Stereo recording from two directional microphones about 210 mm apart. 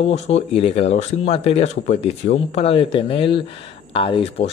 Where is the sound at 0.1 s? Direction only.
30° left (ahead or behind).